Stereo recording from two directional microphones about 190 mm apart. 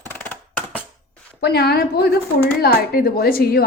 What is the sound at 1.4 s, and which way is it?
A woman's voice, 55° left (ahead or behind).